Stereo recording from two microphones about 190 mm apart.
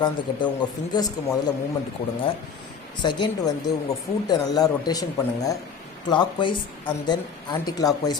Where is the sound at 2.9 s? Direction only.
25° left (ahead or behind).